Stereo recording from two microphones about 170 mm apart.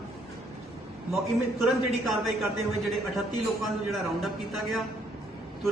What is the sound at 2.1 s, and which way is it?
A man's voice, centre (ahead or behind).